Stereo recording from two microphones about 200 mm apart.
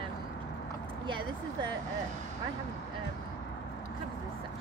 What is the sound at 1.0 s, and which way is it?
Speech, 25° right (ahead or behind).